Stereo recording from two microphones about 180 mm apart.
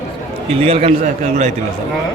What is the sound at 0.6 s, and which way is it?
Speech, 35° right (ahead or behind).